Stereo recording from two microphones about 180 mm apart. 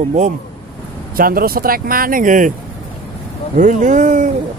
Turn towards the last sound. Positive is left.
turn(degrees=-45)  # may be behind; listen again after turning